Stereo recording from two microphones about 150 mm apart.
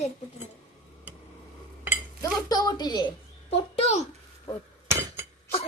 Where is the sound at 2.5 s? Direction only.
25° left (ahead or behind).